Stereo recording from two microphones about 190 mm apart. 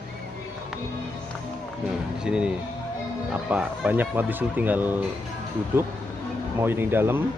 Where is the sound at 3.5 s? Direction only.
10° right (ahead or behind).